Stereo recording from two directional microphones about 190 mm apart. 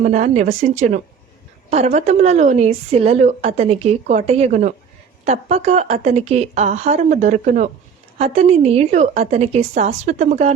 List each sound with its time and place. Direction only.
0.0 s a woman's voice: 40° right (ahead or behind)